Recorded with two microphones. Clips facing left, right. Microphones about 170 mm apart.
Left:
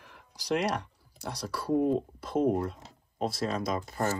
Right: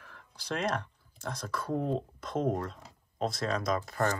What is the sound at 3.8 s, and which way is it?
Speech, 15° left (ahead or behind).